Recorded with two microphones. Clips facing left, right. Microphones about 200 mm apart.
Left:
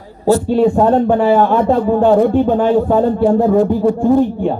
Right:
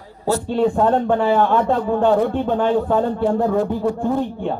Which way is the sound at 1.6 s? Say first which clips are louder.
Left 5 dB; 35° left (ahead or behind).